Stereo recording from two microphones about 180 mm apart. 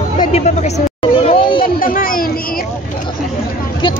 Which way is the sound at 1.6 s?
50° left (ahead or behind).